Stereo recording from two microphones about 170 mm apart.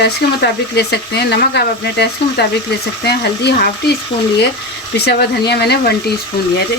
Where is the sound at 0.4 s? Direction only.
75° left (ahead or behind).